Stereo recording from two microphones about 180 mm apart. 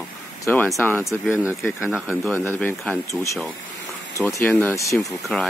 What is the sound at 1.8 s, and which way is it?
Speech, 5° right (ahead or behind).